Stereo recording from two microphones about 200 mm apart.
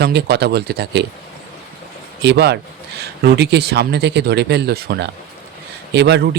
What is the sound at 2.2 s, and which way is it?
Speech, 60° right (ahead or behind).